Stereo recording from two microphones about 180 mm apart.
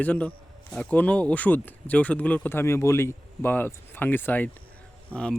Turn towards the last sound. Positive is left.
turn(degrees=5)  # may be behind; listen again after turning